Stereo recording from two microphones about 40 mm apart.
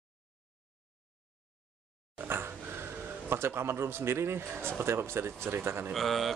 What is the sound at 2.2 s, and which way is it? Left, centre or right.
Dog, right.